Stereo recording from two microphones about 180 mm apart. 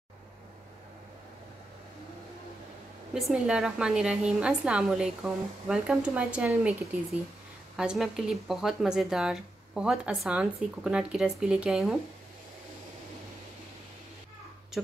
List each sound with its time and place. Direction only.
3.2 s speech: 5° right (ahead or behind)